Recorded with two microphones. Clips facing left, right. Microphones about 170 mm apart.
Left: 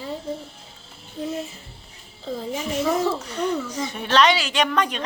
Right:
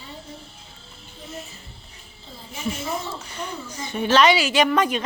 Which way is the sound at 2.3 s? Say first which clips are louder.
Left 4 dB; 90° left.